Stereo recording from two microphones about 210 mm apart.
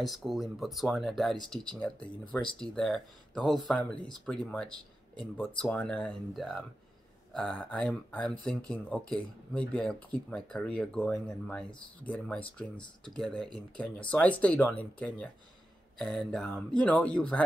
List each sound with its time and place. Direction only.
0.0 s speech: centre (ahead or behind)